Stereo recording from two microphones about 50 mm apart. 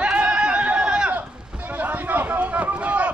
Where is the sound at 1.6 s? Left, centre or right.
Right.